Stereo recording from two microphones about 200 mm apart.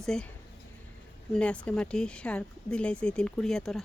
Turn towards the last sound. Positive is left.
turn(degrees=0)  # may be behind; listen again after turning